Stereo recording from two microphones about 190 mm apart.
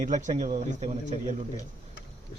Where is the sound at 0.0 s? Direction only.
40° right (ahead or behind).